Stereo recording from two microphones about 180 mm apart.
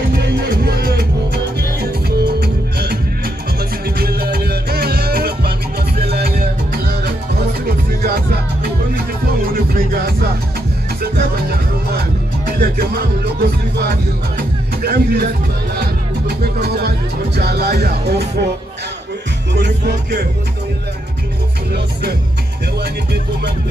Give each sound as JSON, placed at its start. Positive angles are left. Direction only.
{"t": 0.7, "sound": "music", "side_deg": -60}
{"t": 4.0, "sound": "music", "side_deg": -60}
{"t": 9.8, "sound": "music", "side_deg": -60}
{"t": 12.4, "sound": "music", "side_deg": -55}
{"t": 19.5, "sound": "music", "side_deg": -65}